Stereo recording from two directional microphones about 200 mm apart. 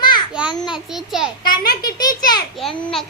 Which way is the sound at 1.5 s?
20° left (ahead or behind).